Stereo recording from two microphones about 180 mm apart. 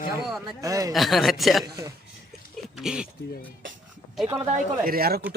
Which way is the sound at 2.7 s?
5° right (ahead or behind).